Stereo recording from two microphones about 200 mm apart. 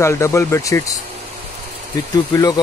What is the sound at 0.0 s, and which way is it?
Speech, 15° left (ahead or behind).